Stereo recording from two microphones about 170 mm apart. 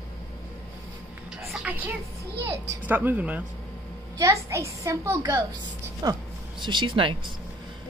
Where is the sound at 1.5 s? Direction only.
5° right (ahead or behind).